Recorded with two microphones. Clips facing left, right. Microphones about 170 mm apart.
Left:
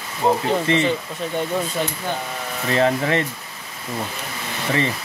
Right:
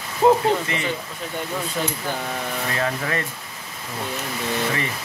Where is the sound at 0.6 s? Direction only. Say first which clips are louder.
Left 8 dB; 30° left (ahead or behind).